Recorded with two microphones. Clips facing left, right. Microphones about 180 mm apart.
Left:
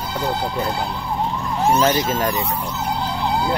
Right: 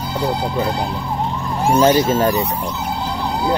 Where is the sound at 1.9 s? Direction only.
30° right (ahead or behind).